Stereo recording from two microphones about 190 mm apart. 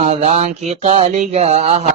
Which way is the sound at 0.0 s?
35° right (ahead or behind).